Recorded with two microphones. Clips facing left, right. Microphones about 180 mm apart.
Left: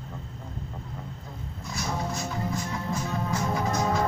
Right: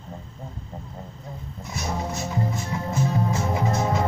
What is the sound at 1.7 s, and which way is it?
Music, 20° right (ahead or behind).